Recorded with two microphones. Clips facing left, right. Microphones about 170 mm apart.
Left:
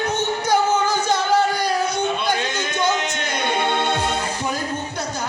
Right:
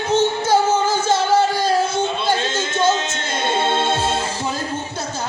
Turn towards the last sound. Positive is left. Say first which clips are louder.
# right 2 dB
turn(degrees=-20)  # may be behind; listen again after turning